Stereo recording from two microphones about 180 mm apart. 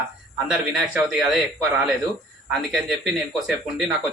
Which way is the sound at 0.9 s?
5° right (ahead or behind).